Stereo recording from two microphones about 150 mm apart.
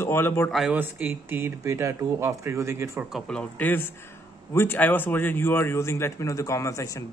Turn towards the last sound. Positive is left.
turn(degrees=20)  # may be behind; listen again after turning